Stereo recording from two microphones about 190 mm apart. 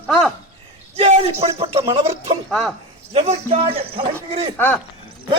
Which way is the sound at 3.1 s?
35° right (ahead or behind).